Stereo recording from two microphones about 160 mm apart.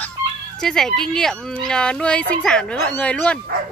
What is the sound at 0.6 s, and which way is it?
Speech, 5° left (ahead or behind).